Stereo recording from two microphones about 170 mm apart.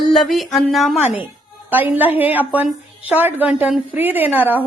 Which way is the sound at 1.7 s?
10° right (ahead or behind).